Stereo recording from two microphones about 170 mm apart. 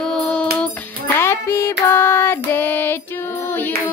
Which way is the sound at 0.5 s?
10° left (ahead or behind).